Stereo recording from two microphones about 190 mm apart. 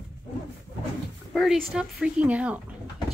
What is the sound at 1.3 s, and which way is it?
Speech, centre (ahead or behind).